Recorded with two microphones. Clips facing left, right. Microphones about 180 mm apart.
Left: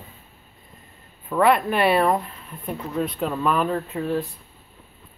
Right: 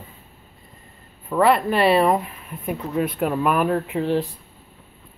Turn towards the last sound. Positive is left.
turn(degrees=-25)  # may be behind; listen again after turning